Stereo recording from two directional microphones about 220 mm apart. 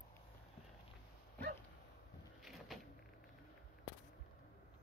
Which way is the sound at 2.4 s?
Centre (ahead or behind).